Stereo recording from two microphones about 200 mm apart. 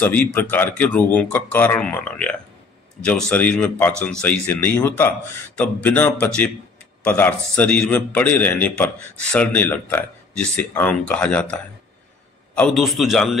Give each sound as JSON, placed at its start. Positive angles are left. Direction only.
{"t": 0.0, "sound": "a man's voice", "side_deg": 10}